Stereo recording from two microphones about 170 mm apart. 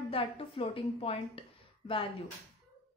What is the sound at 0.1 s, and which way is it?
A woman's voice, 30° left (ahead or behind).